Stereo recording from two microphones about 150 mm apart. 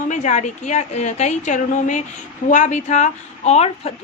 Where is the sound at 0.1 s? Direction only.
50° left (ahead or behind).